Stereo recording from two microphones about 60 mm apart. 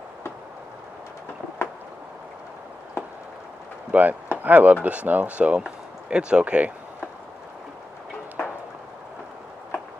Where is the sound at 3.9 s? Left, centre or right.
Right.